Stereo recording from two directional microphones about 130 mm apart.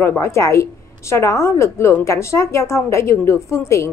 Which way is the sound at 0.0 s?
20° left (ahead or behind).